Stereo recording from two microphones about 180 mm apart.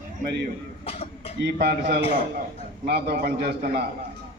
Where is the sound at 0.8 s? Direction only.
35° left (ahead or behind).